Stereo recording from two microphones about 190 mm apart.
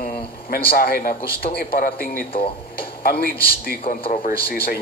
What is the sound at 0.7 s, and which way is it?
A woman's voice, 50° left (ahead or behind).